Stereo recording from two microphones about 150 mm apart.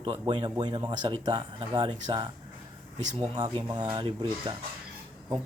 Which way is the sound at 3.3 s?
30° right (ahead or behind).